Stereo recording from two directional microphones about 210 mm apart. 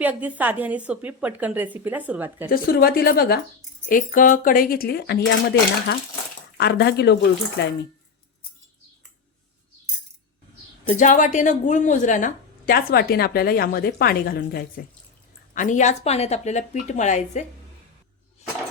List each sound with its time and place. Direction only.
0.0 s a woman's voice: 5° right (ahead or behind)
2.5 s a woman's voice: 45° left (ahead or behind)
10.8 s a woman's voice: 35° left (ahead or behind)
15.5 s speech: 35° left (ahead or behind)